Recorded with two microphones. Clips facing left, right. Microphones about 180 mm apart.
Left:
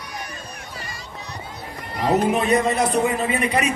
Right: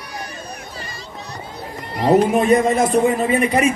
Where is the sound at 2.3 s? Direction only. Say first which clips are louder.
Right 4 dB; 50° right (ahead or behind).